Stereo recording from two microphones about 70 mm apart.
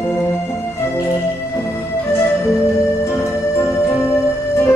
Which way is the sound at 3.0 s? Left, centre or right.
Left.